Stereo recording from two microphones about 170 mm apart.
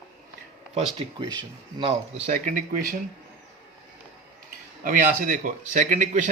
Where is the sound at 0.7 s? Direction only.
25° right (ahead or behind).